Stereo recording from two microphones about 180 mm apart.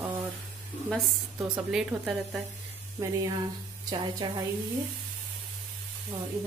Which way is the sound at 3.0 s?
20° right (ahead or behind).